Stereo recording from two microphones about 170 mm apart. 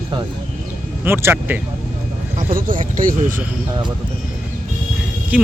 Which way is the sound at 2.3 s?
55° right (ahead or behind).